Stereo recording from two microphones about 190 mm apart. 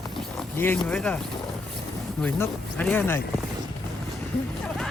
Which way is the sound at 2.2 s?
5° left (ahead or behind).